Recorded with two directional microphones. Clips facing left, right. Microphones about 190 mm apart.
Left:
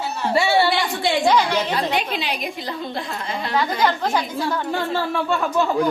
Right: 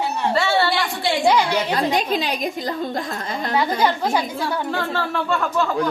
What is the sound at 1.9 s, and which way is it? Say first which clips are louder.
A woman's voice: right 3 dB; 40° right (ahead or behind).